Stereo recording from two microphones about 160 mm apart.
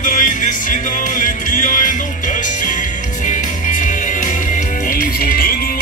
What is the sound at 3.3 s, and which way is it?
Music, 55° left (ahead or behind).